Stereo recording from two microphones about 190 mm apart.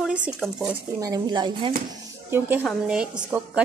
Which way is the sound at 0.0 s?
5° right (ahead or behind).